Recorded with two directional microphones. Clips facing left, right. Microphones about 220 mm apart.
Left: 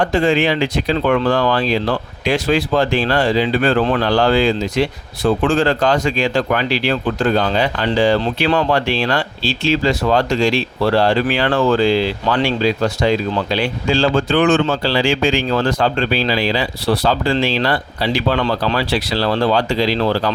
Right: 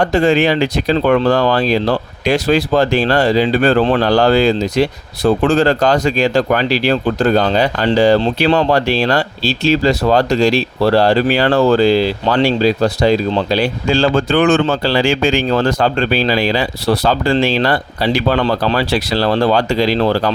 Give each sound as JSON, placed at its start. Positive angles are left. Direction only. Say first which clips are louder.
{"t": 0.0, "sound": "speech", "louder": "right 3 dB", "side_deg": -40}